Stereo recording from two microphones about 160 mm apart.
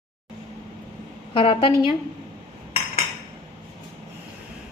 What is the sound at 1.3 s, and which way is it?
Speech, 35° left (ahead or behind).